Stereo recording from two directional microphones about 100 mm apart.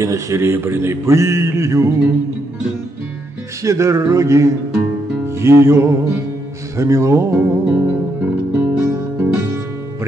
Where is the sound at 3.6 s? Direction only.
30° right (ahead or behind).